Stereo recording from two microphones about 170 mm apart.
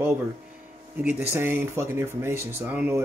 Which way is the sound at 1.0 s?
10° right (ahead or behind).